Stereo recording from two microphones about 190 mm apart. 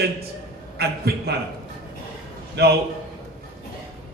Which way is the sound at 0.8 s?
55° right (ahead or behind).